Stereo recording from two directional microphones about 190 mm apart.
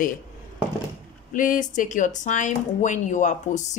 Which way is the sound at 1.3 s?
45° left (ahead or behind).